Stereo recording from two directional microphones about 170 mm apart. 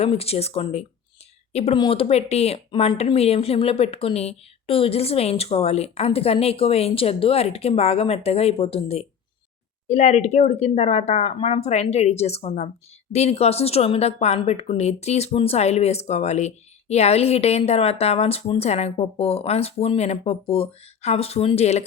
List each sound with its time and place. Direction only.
0.0 s speech: 35° left (ahead or behind)